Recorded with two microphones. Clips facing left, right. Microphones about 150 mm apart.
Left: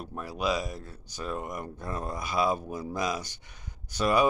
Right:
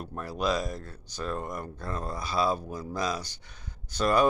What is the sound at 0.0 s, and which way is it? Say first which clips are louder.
Speech: right 1 dB; 5° left (ahead or behind).